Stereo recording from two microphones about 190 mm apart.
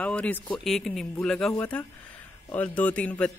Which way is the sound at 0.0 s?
5° left (ahead or behind).